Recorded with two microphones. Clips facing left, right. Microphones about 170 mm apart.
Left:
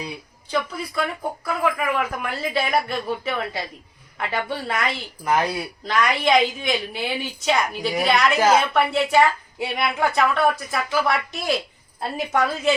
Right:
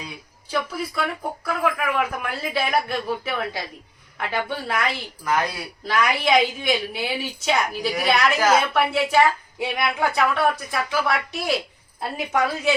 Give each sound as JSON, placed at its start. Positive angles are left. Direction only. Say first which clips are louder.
{"t": 0.5, "sound": "a woman's voice", "louder": "left 1 dB", "side_deg": 0}
{"t": 5.2, "sound": "speech", "louder": "left 2 dB", "side_deg": 25}
{"t": 5.8, "sound": "a woman's voice", "louder": "even", "side_deg": -5}